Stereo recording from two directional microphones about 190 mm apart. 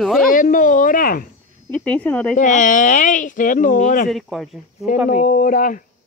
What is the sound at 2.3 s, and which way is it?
Speech, 40° left (ahead or behind).